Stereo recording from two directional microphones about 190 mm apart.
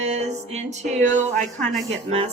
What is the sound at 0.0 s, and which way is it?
Music, 35° right (ahead or behind).